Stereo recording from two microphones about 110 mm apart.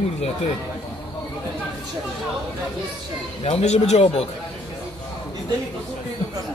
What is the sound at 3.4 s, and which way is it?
Speech, 85° left.